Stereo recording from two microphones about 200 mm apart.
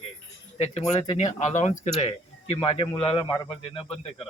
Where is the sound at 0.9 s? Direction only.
35° left (ahead or behind).